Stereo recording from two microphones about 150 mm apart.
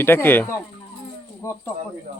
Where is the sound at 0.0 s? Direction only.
15° left (ahead or behind).